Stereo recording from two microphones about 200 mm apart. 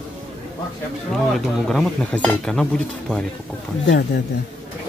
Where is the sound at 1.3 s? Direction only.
Centre (ahead or behind).